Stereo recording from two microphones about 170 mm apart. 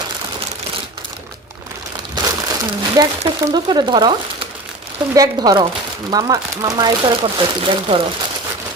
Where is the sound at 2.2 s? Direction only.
25° right (ahead or behind).